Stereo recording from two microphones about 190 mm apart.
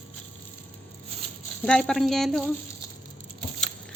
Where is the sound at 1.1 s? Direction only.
35° right (ahead or behind).